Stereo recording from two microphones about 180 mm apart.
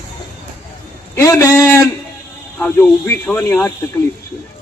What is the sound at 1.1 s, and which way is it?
Speech, 15° left (ahead or behind).